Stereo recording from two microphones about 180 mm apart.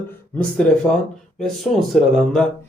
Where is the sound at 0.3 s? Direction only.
5° left (ahead or behind).